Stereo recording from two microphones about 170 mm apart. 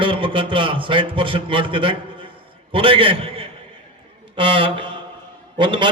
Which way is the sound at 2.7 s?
30° right (ahead or behind).